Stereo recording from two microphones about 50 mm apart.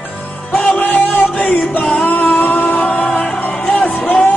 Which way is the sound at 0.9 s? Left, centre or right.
Left.